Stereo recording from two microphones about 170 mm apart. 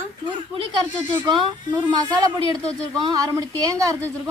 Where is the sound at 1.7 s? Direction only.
20° right (ahead or behind).